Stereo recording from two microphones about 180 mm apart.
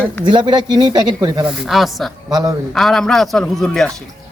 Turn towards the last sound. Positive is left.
turn(degrees=5)  # may be behind; listen again after turning